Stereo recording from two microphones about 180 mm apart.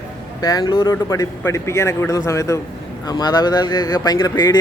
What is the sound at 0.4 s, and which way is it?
A man's voice, 20° left (ahead or behind).